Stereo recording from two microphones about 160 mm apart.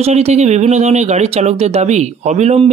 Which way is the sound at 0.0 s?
40° right (ahead or behind).